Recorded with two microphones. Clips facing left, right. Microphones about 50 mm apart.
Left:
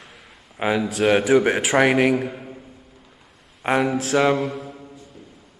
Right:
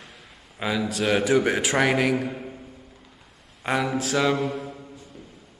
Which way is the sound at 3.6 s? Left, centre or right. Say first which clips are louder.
Left 4 dB; left.